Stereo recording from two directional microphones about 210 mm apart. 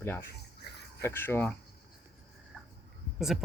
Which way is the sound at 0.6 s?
50° left (ahead or behind).